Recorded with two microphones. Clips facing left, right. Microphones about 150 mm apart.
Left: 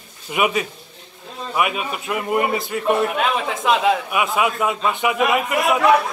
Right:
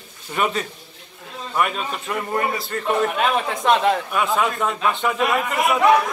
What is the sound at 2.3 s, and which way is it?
Speech, 20° left (ahead or behind).